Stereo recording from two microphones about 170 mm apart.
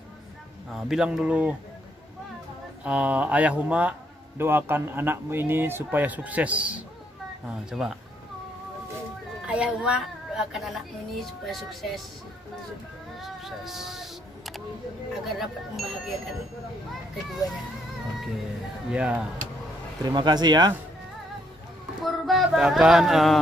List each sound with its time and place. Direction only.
0.7 s speech: 5° right (ahead or behind)
2.8 s a man's voice: 10° right (ahead or behind)
9.5 s speech: 5° right (ahead or behind)
13.2 s a sound: centre (ahead or behind)
15.2 s speech: centre (ahead or behind)
18.9 s a man's voice: 5° right (ahead or behind)
20.1 s speech: 25° right (ahead or behind)
22.0 s music: centre (ahead or behind)